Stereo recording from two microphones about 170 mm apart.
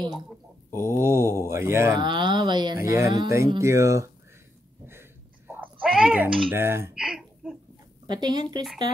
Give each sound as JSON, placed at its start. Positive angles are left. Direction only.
{"t": 0.7, "sound": "mantra", "side_deg": -15}
{"t": 2.0, "sound": "speech", "side_deg": -25}
{"t": 5.5, "sound": "speech", "side_deg": -10}
{"t": 7.0, "sound": "a sound", "side_deg": 0}
{"t": 8.1, "sound": "speech", "side_deg": -25}